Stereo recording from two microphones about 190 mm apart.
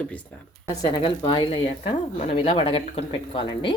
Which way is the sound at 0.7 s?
25° left (ahead or behind).